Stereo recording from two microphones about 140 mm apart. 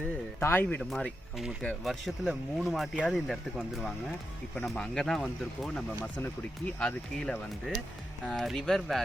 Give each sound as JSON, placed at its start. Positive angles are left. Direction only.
{"t": 0.3, "sound": "speech", "side_deg": 15}
{"t": 4.5, "sound": "speech", "side_deg": 0}
{"t": 6.0, "sound": "speech", "side_deg": 15}